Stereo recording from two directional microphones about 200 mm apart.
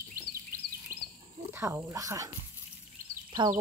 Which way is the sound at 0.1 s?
45° right (ahead or behind).